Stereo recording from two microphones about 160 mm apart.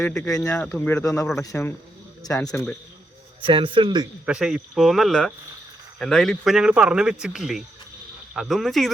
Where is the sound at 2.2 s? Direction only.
20° left (ahead or behind).